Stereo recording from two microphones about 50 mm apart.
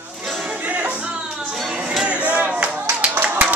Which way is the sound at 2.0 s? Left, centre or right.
Right.